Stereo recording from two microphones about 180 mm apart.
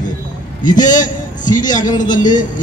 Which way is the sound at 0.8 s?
45° left (ahead or behind).